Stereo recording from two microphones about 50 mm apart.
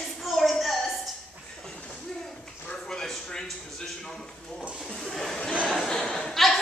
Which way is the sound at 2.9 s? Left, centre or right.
Centre.